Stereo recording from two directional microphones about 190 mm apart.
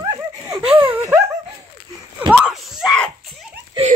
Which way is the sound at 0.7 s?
25° right (ahead or behind).